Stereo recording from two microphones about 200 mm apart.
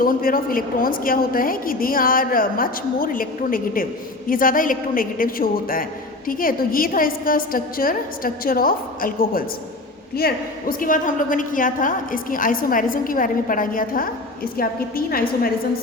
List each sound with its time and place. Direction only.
0.0 s a woman's voice: 45° left (ahead or behind)